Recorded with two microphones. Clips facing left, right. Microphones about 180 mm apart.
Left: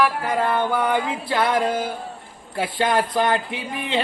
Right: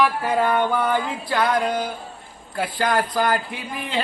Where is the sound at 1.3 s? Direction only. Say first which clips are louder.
Even; 25° left (ahead or behind).